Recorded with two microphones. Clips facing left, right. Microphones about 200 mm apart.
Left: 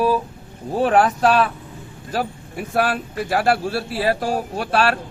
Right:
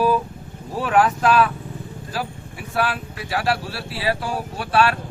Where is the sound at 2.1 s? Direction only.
50° left (ahead or behind).